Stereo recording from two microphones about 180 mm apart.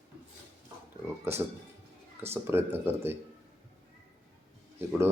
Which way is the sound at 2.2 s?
15° right (ahead or behind).